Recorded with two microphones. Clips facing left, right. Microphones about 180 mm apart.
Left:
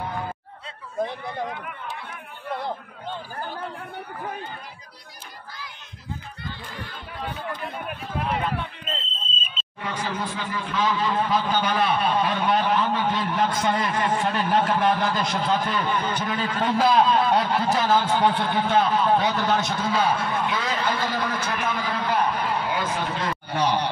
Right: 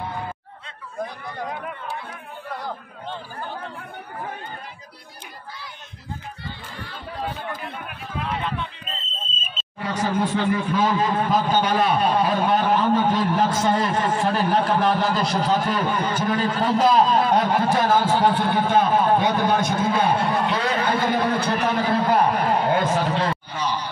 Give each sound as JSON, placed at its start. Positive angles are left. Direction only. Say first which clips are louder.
{"t": 9.8, "sound": "chatter", "louder": "right 5 dB", "side_deg": -35}
{"t": 10.1, "sound": "a man's voice", "louder": "right 8 dB", "side_deg": -50}
{"t": 16.7, "sound": "a man's voice", "louder": "right 2 dB", "side_deg": 0}
{"t": 17.0, "sound": "a man's voice", "louder": "right 2 dB", "side_deg": -45}
{"t": 20.3, "sound": "a sound", "louder": "right 4 dB", "side_deg": -35}
{"t": 20.8, "sound": "speech", "louder": "right 4 dB", "side_deg": -60}
{"t": 21.5, "sound": "a man's voice", "louder": "right 6 dB", "side_deg": -40}
{"t": 23.5, "sound": "a sound", "louder": "left 4 dB", "side_deg": 65}